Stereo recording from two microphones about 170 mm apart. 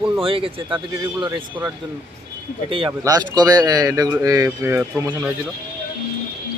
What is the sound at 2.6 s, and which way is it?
A man's voice, 30° right (ahead or behind).